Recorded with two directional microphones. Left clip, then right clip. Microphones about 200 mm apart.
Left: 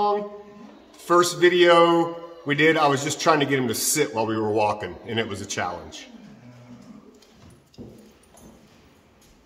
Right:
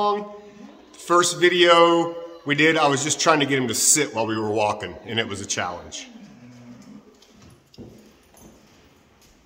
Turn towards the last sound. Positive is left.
turn(degrees=-25)  # may be behind; listen again after turning